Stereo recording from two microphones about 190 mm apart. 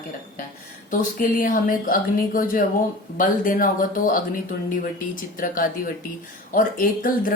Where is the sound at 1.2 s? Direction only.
45° left (ahead or behind).